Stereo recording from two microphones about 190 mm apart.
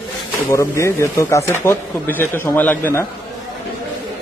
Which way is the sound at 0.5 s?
15° left (ahead or behind).